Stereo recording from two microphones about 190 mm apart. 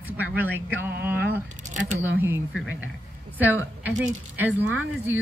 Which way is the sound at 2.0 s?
10° right (ahead or behind).